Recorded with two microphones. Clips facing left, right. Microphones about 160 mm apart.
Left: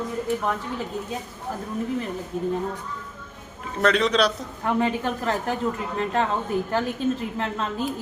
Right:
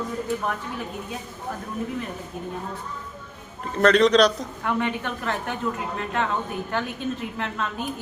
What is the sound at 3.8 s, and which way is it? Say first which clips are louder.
Speech: right 4 dB; 5° left (ahead or behind).